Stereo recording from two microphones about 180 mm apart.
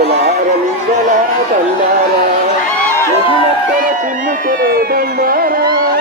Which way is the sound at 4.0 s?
45° right (ahead or behind).